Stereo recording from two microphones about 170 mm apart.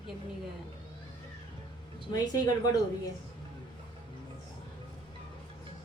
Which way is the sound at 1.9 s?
25° left (ahead or behind).